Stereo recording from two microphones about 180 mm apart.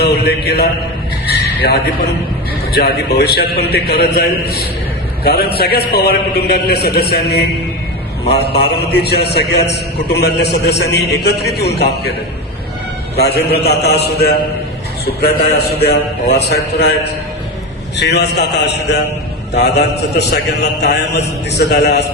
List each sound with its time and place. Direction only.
0.1 s mantra: 65° left (ahead or behind)
1.3 s a sound: 65° left (ahead or behind)
2.7 s a man's voice: 65° left (ahead or behind)
13.1 s a man's voice: 65° left (ahead or behind)
17.9 s a man's voice: 70° left (ahead or behind)